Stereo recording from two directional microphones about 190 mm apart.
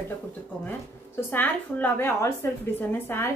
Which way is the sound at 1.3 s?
10° left (ahead or behind).